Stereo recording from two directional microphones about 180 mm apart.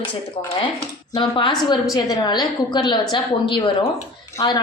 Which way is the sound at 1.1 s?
25° left (ahead or behind).